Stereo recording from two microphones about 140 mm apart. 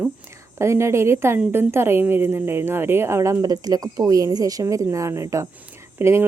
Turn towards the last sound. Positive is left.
turn(degrees=-20)  # may be behind; listen again after turning